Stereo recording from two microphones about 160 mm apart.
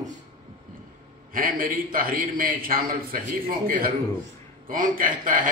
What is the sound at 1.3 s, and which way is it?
A man's voice, 60° right (ahead or behind).